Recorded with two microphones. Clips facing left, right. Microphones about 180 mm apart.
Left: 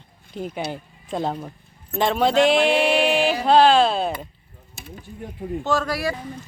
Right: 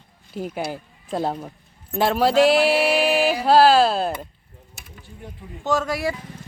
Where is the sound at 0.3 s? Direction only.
5° right (ahead or behind).